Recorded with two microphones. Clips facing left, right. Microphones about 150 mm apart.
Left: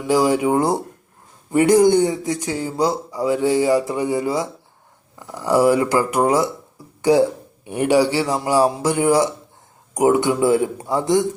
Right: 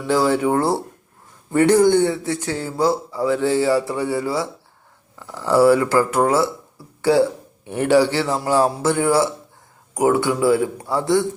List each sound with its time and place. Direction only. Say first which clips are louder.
0.0 s a man's voice: left 1 dB; 15° left (ahead or behind)